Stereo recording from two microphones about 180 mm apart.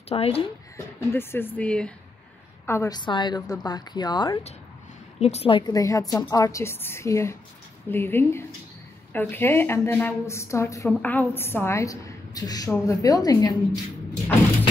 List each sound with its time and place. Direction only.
0.1 s speech: 30° left (ahead or behind)
0.7 s a woman's voice: 15° left (ahead or behind)